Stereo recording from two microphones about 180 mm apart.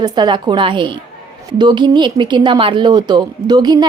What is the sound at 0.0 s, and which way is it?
Speech, 25° right (ahead or behind).